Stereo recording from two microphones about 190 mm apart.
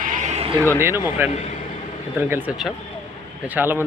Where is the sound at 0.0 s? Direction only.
40° right (ahead or behind).